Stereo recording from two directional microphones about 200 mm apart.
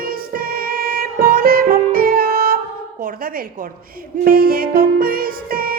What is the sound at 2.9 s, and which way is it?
Speech, 45° right (ahead or behind).